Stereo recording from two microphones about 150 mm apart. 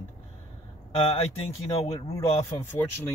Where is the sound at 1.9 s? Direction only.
20° left (ahead or behind).